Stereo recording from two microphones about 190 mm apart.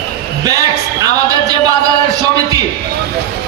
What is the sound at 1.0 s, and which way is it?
Speech, 20° right (ahead or behind).